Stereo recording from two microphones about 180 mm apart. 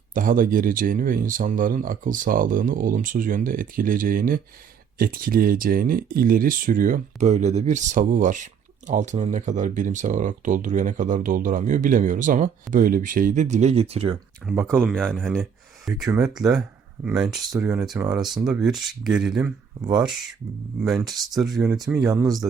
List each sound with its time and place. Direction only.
0.1 s speech: 50° right (ahead or behind); by 14.2 s 35° right (ahead or behind)
14.4 s speech: 5° right (ahead or behind)
17.6 s speech: 5° right (ahead or behind)
19.8 s speech: 20° right (ahead or behind)
20.8 s speech: centre (ahead or behind)
21.7 s speech: 15° right (ahead or behind)